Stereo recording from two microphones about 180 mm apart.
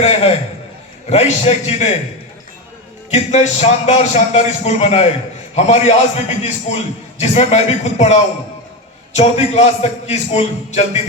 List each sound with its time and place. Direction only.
0.0 s a man's voice: 35° left (ahead or behind)
3.1 s speech: 40° left (ahead or behind)